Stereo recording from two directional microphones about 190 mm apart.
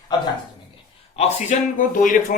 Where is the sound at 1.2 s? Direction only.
30° left (ahead or behind).